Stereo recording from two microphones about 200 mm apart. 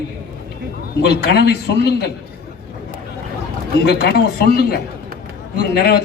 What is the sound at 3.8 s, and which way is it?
A man's voice, 55° left (ahead or behind).